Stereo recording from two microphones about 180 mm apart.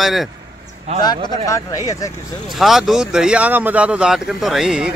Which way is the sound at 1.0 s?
20° left (ahead or behind).